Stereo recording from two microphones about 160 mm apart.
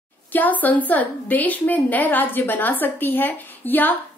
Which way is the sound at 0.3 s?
10° left (ahead or behind).